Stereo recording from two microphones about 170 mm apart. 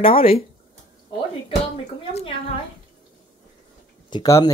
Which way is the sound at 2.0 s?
30° left (ahead or behind).